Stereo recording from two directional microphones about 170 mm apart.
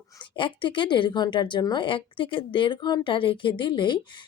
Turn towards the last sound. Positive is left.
turn(degrees=25)  # may be behind; listen again after turning